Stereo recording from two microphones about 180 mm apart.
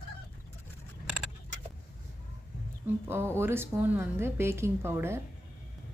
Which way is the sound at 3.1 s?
15° right (ahead or behind).